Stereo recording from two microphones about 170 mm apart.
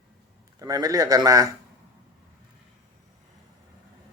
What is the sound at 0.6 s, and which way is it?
Speech, 20° right (ahead or behind).